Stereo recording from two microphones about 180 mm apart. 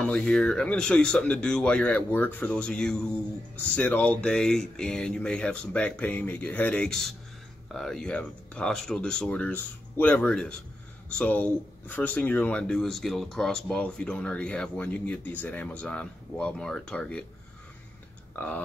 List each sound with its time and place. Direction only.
0.0 s speech: 5° left (ahead or behind)
18.3 s speech: 10° left (ahead or behind)